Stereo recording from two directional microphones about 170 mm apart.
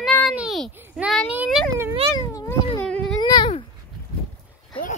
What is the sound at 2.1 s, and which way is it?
Cat, 20° left (ahead or behind).